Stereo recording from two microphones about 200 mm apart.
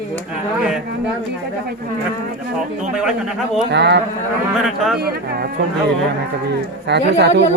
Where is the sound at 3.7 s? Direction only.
60° right (ahead or behind).